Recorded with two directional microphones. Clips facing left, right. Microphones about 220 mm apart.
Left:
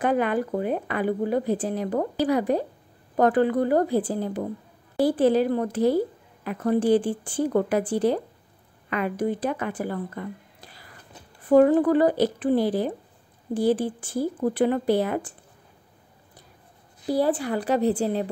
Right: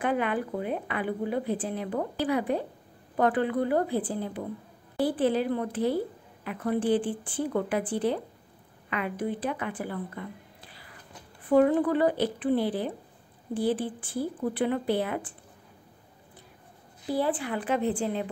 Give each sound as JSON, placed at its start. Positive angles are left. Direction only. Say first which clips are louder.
{"t": 0.0, "sound": "a woman's voice", "louder": "left 5 dB", "side_deg": 40}
{"t": 17.0, "sound": "a woman's voice", "louder": "left 5 dB", "side_deg": 40}